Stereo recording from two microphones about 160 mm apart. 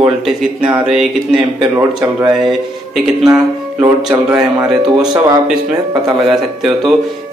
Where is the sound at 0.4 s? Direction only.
5° right (ahead or behind).